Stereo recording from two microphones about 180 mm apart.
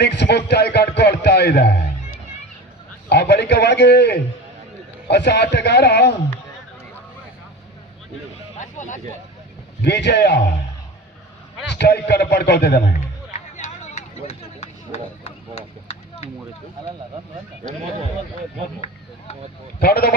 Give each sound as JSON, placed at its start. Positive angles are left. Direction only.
{"t": 0.0, "sound": "a man's voice", "side_deg": 70}
{"t": 8.5, "sound": "a sound", "side_deg": 45}
{"t": 9.8, "sound": "a man's voice", "side_deg": 70}
{"t": 11.7, "sound": "a man's voice", "side_deg": 70}
{"t": 13.3, "sound": "a sound", "side_deg": 40}
{"t": 19.8, "sound": "speech", "side_deg": 60}